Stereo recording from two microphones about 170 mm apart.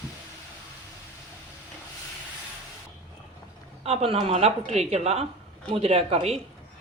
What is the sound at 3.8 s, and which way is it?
A woman's voice, 35° right (ahead or behind).